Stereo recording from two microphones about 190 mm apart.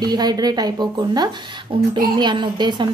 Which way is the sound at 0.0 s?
20° right (ahead or behind).